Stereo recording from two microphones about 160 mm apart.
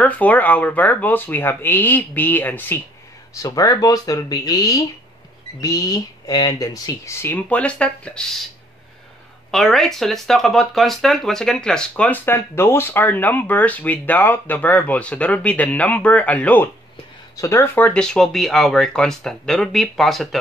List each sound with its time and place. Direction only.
0.0 s speech: 10° left (ahead or behind)
9.5 s speech: centre (ahead or behind)